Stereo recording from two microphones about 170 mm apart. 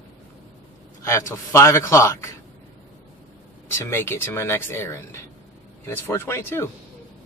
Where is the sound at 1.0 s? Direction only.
15° left (ahead or behind).